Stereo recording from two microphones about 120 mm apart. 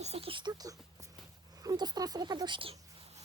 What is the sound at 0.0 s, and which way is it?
Speech, 60° right (ahead or behind).